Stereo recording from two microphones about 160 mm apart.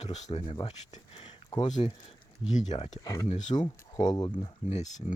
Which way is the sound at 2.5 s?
45° left (ahead or behind).